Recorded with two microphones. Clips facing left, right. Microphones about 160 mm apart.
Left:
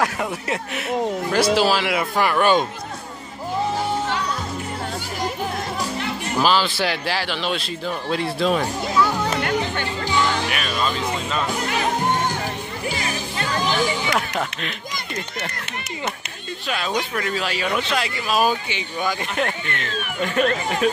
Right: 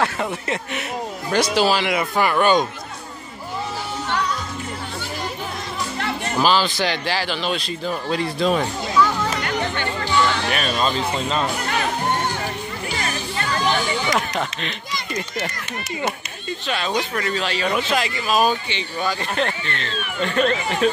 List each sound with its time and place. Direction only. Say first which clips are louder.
0.0 s speech: even; 5° left (ahead or behind)
6.4 s speech: right 1 dB; centre (ahead or behind)
10.5 s speech: right 3 dB; 35° right (ahead or behind)
14.1 s speech: right 1 dB; 5° left (ahead or behind)
16.6 s speech: right 1 dB; 5° left (ahead or behind)